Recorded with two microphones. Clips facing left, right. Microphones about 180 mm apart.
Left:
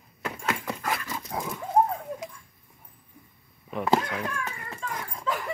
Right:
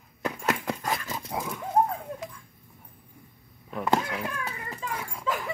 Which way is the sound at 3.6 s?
5° left (ahead or behind).